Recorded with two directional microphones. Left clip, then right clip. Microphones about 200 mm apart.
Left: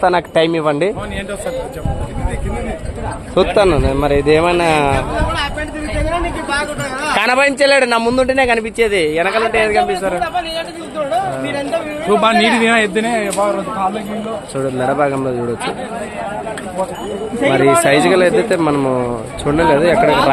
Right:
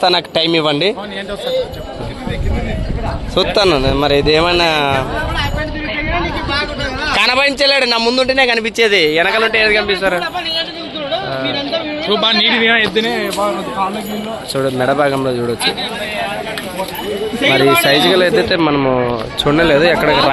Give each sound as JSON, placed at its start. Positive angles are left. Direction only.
{"t": 0.0, "sound": "speech", "side_deg": 5}
{"t": 3.3, "sound": "speech", "side_deg": 10}
{"t": 7.2, "sound": "a man's voice", "side_deg": 20}
{"t": 12.1, "sound": "speech", "side_deg": 45}
{"t": 14.5, "sound": "speech", "side_deg": -5}
{"t": 17.5, "sound": "speech", "side_deg": 5}